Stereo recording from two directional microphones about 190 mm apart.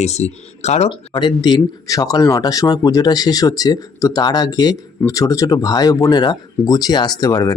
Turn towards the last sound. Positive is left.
turn(degrees=20)  # may be behind; listen again after turning